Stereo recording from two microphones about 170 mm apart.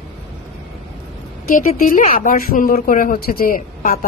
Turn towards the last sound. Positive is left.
turn(degrees=55)  # may be behind; listen again after turning